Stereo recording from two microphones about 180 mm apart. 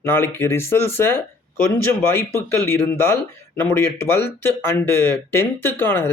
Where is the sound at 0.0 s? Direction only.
10° left (ahead or behind).